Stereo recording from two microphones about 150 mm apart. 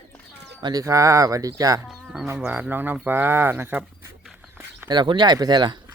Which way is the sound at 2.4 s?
10° right (ahead or behind).